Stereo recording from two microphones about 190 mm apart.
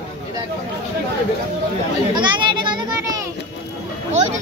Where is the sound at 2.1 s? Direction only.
25° right (ahead or behind).